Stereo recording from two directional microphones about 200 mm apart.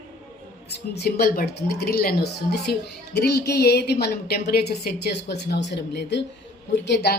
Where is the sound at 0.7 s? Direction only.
55° left (ahead or behind).